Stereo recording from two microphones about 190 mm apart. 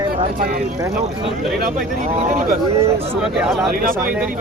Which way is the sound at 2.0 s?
35° right (ahead or behind).